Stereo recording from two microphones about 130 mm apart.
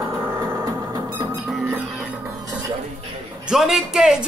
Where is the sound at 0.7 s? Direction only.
30° right (ahead or behind).